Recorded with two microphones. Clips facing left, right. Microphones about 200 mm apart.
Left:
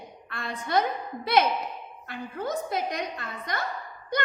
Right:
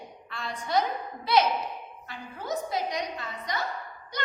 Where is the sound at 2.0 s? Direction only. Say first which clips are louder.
Left 6 dB; 55° left (ahead or behind).